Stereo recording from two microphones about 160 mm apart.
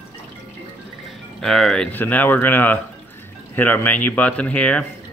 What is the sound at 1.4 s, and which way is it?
Speech, centre (ahead or behind).